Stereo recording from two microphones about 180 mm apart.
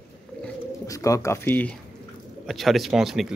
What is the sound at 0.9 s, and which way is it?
A man's voice, 20° left (ahead or behind).